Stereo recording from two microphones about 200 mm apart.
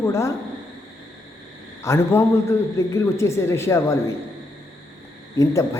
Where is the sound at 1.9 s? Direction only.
15° left (ahead or behind).